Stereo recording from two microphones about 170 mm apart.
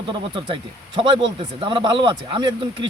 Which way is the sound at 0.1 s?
30° right (ahead or behind).